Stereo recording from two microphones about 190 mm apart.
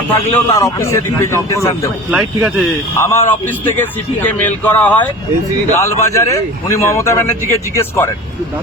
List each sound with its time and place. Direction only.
0.3 s speech: 15° left (ahead or behind)
2.0 s speech: centre (ahead or behind)
3.0 s speech: 15° left (ahead or behind)